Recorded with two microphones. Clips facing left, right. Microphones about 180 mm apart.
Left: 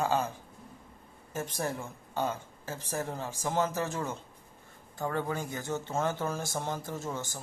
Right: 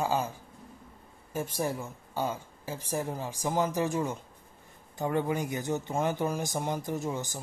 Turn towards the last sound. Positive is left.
turn(degrees=-15)  # may be behind; listen again after turning